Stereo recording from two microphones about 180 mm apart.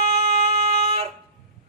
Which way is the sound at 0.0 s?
35° right (ahead or behind).